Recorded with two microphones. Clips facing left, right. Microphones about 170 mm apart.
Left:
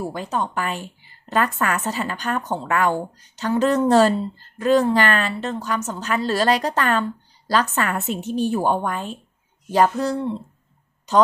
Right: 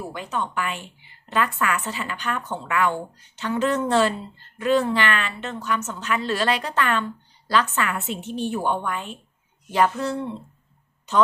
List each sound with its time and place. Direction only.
0.1 s a woman's voice: 40° left (ahead or behind)